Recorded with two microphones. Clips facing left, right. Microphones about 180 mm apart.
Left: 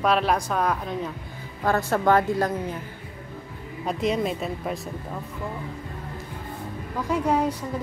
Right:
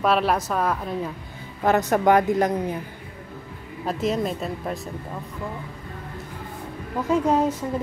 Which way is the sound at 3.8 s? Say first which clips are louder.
Even; centre (ahead or behind).